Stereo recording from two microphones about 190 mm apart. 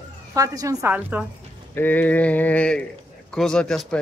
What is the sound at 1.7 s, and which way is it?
A man's voice, 10° left (ahead or behind).